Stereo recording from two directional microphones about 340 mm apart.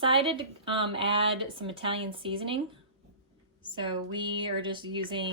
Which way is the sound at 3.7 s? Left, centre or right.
Centre.